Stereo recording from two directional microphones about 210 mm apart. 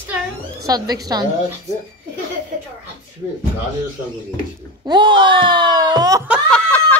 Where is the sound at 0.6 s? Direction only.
20° right (ahead or behind).